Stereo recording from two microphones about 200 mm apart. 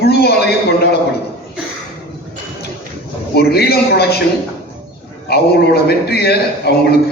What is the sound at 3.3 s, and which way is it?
Speech, 50° left (ahead or behind).